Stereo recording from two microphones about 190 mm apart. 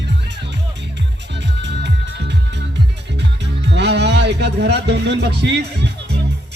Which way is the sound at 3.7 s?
65° right (ahead or behind).